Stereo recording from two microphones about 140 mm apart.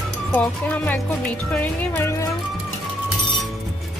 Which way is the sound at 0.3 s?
10° left (ahead or behind).